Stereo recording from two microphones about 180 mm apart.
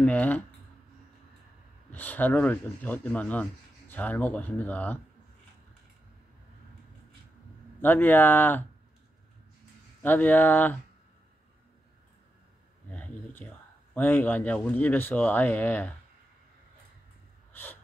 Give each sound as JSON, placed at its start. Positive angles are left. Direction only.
{"t": 0.0, "sound": "speech", "side_deg": 10}
{"t": 1.9, "sound": "speech", "side_deg": 10}
{"t": 7.8, "sound": "speech", "side_deg": 10}
{"t": 10.0, "sound": "speech", "side_deg": 10}
{"t": 12.9, "sound": "a sound", "side_deg": 10}
{"t": 13.9, "sound": "speech", "side_deg": 10}
{"t": 17.5, "sound": "a sound", "side_deg": 10}